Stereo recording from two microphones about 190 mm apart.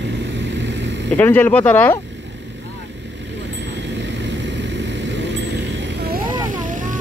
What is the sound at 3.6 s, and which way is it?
Vehicle, 65° right (ahead or behind).